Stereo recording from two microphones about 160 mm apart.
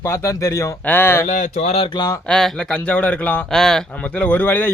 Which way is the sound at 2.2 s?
5° left (ahead or behind).